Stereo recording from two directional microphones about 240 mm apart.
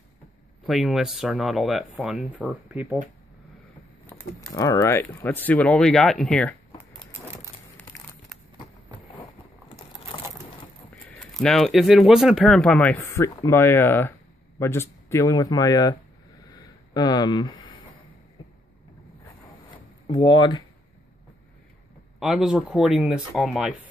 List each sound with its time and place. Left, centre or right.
0.7 s speech: centre
4.0 s speech: centre
7.6 s crumpling: centre
11.1 s speech: centre
16.5 s a sound: centre
20.1 s speech: left
20.3 s speech: centre
22.2 s speech: centre